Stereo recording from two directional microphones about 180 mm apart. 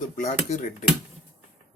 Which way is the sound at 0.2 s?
45° left (ahead or behind).